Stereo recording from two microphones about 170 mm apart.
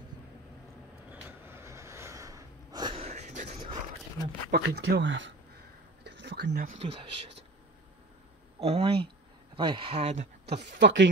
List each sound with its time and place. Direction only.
1.1 s a sound: 15° right (ahead or behind); by 3.6 s 45° right (ahead or behind)
4.5 s speech: 75° right (ahead or behind)
6.1 s a sound: 90° right; by 6.7 s 70° right (ahead or behind)
6.8 s speech: 35° right (ahead or behind)
8.6 s speech: 35° right (ahead or behind)
10.4 s speech: 80° right